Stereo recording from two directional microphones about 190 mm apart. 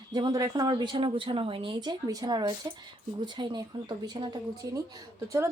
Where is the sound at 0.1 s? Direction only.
20° right (ahead or behind).